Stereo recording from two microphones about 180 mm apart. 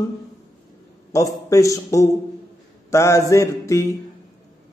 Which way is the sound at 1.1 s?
20° left (ahead or behind).